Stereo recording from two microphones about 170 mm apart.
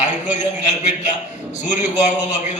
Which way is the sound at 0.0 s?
45° left (ahead or behind).